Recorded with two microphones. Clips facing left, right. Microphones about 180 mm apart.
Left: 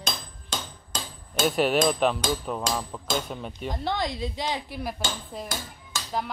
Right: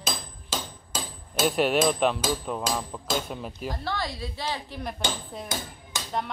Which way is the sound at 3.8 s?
20° left (ahead or behind).